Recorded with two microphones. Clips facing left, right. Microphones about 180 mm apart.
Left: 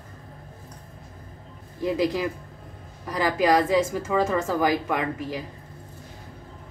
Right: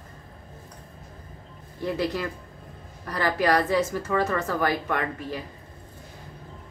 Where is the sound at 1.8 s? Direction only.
10° left (ahead or behind).